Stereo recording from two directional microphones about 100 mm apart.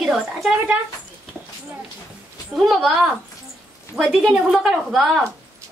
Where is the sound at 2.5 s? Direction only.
Centre (ahead or behind).